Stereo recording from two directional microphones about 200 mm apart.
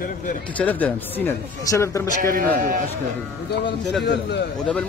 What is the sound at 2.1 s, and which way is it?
Speech, 45° right (ahead or behind).